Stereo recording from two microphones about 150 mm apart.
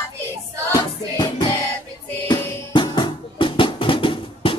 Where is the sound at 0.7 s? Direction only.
25° left (ahead or behind).